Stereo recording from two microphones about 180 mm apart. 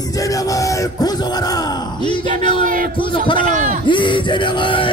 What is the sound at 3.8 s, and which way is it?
Music, 25° left (ahead or behind).